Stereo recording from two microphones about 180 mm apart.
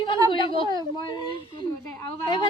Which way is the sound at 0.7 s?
25° left (ahead or behind).